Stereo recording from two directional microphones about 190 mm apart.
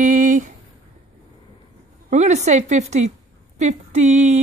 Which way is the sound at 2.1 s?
40° right (ahead or behind).